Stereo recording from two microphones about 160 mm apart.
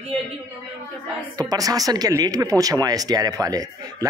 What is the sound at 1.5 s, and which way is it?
Speech, 20° right (ahead or behind).